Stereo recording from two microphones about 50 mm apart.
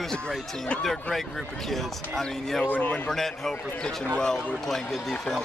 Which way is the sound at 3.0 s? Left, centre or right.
Centre.